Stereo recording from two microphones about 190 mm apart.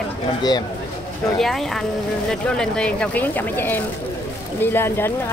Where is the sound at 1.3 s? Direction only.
Centre (ahead or behind).